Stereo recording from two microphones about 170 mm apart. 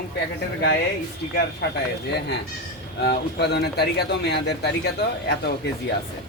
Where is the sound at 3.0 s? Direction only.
75° left (ahead or behind).